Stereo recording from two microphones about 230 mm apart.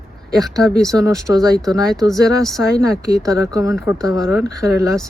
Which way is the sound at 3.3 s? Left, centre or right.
Centre.